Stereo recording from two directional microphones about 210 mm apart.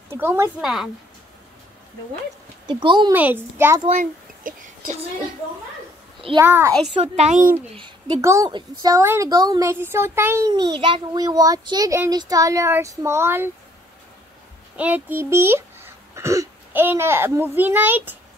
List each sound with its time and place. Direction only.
0.1 s a woman's voice: 10° right (ahead or behind)
2.6 s speech: 20° right (ahead or behind)
3.1 s a woman's voice: 10° right (ahead or behind)
3.9 s a child's voice: 40° right (ahead or behind)
6.4 s a woman's voice: 10° right (ahead or behind)
6.9 s a child's voice: 30° right (ahead or behind)
7.7 s a woman's voice: 20° right (ahead or behind)
14.8 s speech: 10° right (ahead or behind)